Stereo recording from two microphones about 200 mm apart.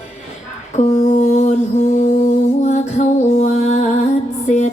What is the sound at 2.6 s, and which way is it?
Music, 35° left (ahead or behind).